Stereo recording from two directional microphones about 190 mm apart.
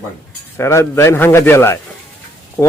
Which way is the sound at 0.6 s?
15° left (ahead or behind).